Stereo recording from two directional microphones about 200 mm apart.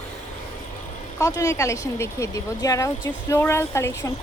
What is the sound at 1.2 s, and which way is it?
Speech, 15° left (ahead or behind).